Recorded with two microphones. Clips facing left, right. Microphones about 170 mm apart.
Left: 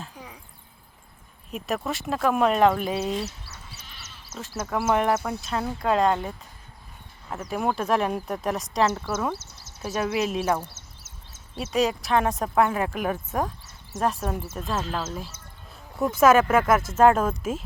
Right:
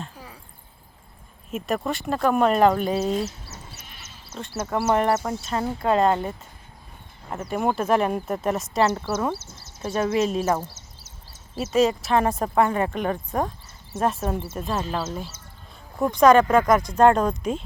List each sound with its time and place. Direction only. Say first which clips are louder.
1.5 s speech: right 3 dB; centre (ahead or behind)
4.4 s speech: right 2 dB; centre (ahead or behind)
7.5 s speech: right 3 dB; centre (ahead or behind)